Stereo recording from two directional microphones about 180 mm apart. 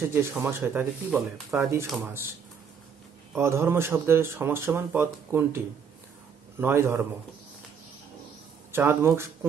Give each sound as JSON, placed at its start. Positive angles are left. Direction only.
{"t": 0.1, "sound": "speech", "side_deg": -15}
{"t": 1.1, "sound": "speech", "side_deg": 0}
{"t": 2.0, "sound": "speech", "side_deg": -15}
{"t": 3.3, "sound": "speech", "side_deg": -15}
{"t": 6.6, "sound": "speech", "side_deg": -15}
{"t": 8.7, "sound": "speech", "side_deg": -15}